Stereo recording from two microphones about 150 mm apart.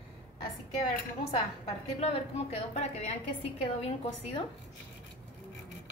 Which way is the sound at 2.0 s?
40° left (ahead or behind).